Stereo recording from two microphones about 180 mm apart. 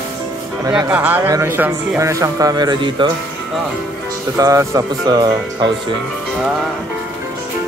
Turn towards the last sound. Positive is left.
turn(degrees=-5)  # may be behind; listen again after turning